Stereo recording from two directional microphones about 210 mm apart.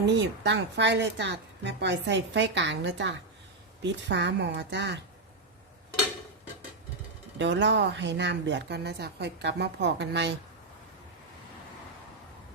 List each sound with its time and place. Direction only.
0.0 s a woman's voice: 55° right (ahead or behind)
7.3 s a woman's voice: 60° right (ahead or behind)